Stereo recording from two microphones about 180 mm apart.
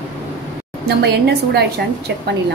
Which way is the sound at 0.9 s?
65° right (ahead or behind).